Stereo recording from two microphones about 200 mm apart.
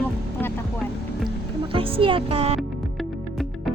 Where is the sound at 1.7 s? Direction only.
25° right (ahead or behind).